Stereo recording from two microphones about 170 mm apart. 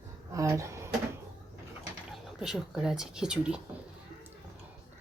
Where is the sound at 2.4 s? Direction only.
5° right (ahead or behind).